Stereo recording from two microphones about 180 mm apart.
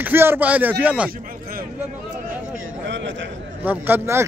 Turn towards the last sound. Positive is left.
turn(degrees=-10)  # may be behind; listen again after turning